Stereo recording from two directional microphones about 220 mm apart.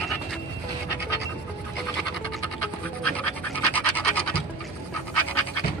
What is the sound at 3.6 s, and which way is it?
Scratch, 5° left (ahead or behind).